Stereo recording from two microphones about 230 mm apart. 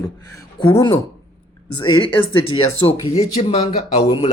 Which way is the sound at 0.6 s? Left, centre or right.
Centre.